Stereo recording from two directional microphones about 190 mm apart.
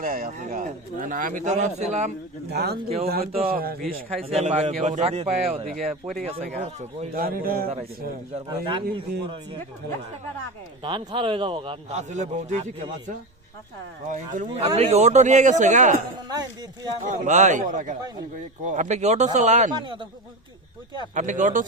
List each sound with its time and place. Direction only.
0.0 s speech: 50° right (ahead or behind)
2.5 s speech: 60° right (ahead or behind)
4.3 s a man's voice: 35° right (ahead or behind)
7.1 s speech: 50° right (ahead or behind)
8.4 s a man's voice: 25° right (ahead or behind)
10.8 s a man's voice: 25° right (ahead or behind)
14.4 s a man's voice: 30° right (ahead or behind)
16.3 s a man's voice: 20° right (ahead or behind)
17.0 s a man's voice: 40° right (ahead or behind)
19.7 s a man's voice: 25° right (ahead or behind)
21.2 s a man's voice: 40° right (ahead or behind)